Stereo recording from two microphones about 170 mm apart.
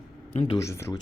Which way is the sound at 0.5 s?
15° left (ahead or behind).